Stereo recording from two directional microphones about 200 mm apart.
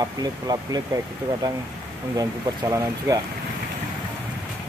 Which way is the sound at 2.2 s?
15° right (ahead or behind).